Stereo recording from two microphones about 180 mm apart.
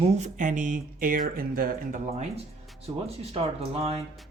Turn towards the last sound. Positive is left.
turn(degrees=-35)  # may be behind; listen again after turning